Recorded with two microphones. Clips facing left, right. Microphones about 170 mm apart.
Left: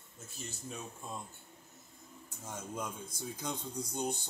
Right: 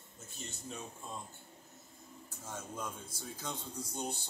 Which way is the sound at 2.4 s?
15° left (ahead or behind).